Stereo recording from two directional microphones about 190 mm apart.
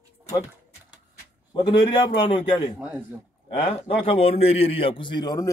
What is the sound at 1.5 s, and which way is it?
A man's voice, 25° left (ahead or behind).